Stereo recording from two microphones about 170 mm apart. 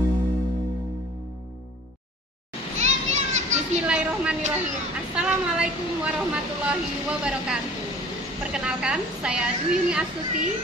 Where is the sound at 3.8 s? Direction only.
5° right (ahead or behind).